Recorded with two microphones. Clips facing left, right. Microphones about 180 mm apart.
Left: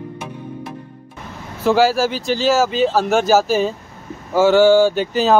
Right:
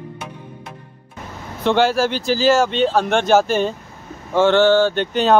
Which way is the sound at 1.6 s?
5° left (ahead or behind).